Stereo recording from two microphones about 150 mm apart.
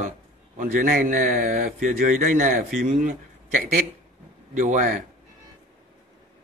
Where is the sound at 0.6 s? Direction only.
65° right (ahead or behind).